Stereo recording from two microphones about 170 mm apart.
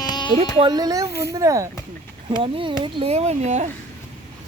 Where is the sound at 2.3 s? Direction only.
30° right (ahead or behind).